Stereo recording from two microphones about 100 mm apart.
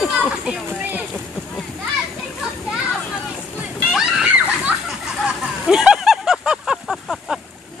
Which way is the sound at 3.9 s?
10° right (ahead or behind).